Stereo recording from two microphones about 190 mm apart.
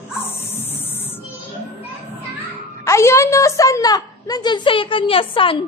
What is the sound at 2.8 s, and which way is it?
A woman's voice, 15° left (ahead or behind).